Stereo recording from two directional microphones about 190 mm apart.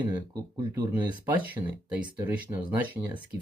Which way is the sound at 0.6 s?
20° right (ahead or behind).